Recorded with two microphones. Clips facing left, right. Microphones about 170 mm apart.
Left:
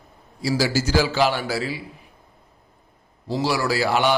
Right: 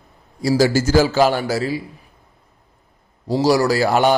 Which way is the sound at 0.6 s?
50° right (ahead or behind).